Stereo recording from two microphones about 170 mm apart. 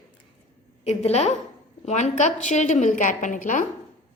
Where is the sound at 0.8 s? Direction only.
35° left (ahead or behind).